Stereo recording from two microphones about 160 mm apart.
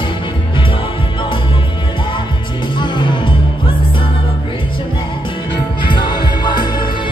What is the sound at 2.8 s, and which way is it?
Music, 30° left (ahead or behind).